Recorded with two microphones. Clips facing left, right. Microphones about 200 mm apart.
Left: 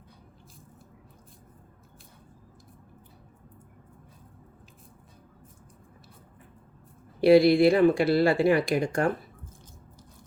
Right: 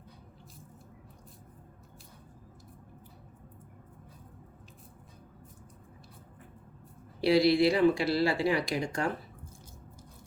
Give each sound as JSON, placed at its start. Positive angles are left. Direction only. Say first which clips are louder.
{"t": 7.2, "sound": "speech", "louder": "left 6 dB", "side_deg": 50}